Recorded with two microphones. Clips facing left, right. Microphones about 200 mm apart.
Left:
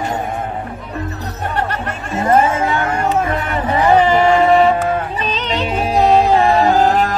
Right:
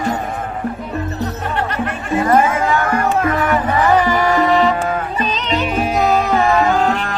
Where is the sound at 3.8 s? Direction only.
25° left (ahead or behind).